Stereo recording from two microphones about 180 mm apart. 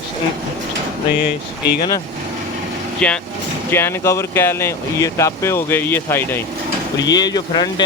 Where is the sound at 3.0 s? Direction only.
5° left (ahead or behind).